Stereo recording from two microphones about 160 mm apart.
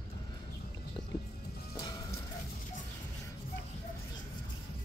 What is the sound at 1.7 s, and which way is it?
Music, 25° left (ahead or behind).